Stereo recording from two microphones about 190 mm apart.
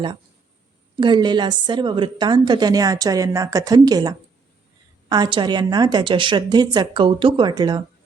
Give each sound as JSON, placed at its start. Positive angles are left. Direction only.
{"t": 0.9, "sound": "a woman's voice", "side_deg": -25}